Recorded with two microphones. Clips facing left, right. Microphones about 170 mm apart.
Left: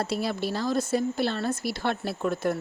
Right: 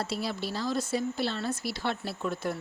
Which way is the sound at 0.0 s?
50° left (ahead or behind).